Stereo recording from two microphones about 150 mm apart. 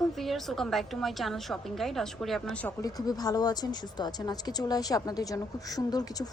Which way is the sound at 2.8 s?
25° left (ahead or behind).